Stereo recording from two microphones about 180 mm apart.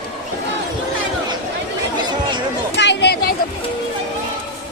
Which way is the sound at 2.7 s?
75° left (ahead or behind).